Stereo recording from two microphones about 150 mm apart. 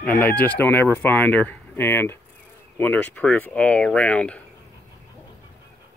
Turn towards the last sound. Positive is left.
turn(degrees=10)  # may be behind; listen again after turning